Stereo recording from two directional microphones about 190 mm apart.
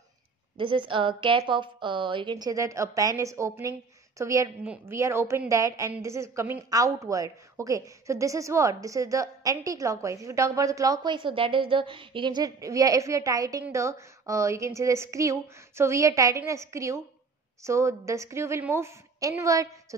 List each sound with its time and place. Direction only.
0.6 s a woman's voice: 25° right (ahead or behind)